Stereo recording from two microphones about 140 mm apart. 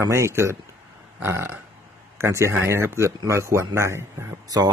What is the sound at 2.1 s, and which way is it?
Speech, 20° right (ahead or behind).